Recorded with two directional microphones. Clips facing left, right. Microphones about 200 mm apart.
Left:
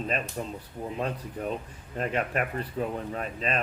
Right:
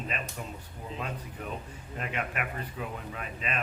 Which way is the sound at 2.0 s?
40° left (ahead or behind).